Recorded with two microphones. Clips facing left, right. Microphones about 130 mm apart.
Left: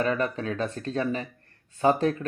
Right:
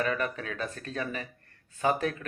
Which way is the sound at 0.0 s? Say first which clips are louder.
Left 4 dB; 30° left (ahead or behind).